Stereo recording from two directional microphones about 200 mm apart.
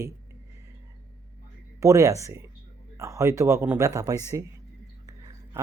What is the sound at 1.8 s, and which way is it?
Speech, 15° right (ahead or behind).